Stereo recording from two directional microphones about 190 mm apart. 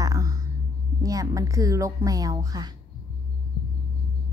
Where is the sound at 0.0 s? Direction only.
15° right (ahead or behind).